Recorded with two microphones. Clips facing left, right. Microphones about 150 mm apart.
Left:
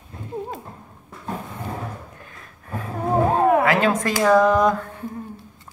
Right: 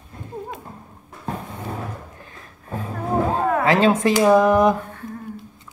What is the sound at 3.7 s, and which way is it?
Speech, 25° right (ahead or behind).